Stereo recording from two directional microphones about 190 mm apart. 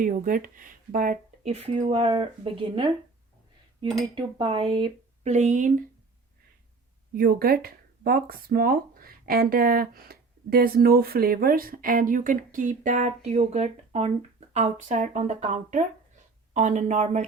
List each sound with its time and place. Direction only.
0.0 s speech: 45° right (ahead or behind); by 2.9 s 25° right (ahead or behind)
4.1 s speech: 25° right (ahead or behind); by 5.7 s 40° right (ahead or behind)
7.2 s speech: 50° right (ahead or behind); by 17.2 s 35° right (ahead or behind)